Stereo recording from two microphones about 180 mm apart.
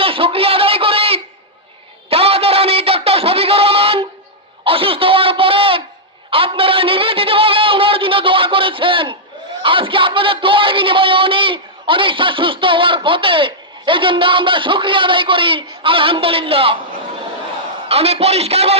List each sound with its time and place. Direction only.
0.0 s a sound: 30° right (ahead or behind)
9.6 s speech: 30° right (ahead or behind)
17.8 s speech: 35° right (ahead or behind)